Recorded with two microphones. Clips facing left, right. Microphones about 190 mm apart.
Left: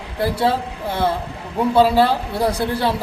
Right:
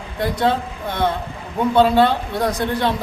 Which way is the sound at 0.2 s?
5° left (ahead or behind).